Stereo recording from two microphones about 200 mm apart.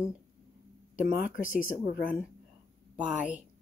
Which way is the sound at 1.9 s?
45° left (ahead or behind).